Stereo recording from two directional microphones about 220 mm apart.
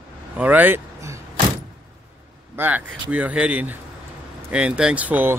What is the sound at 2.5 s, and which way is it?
Speech, 10° right (ahead or behind).